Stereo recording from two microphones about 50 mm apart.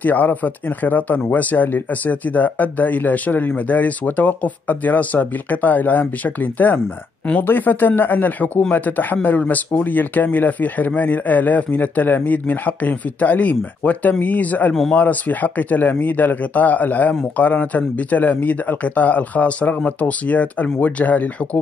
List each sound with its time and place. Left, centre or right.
0.0 s speech: left